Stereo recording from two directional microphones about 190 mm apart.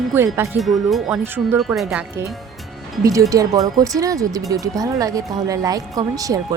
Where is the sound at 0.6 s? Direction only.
Centre (ahead or behind).